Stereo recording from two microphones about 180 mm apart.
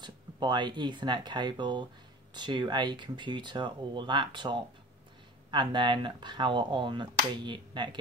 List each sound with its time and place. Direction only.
0.0 s speech: 25° right (ahead or behind)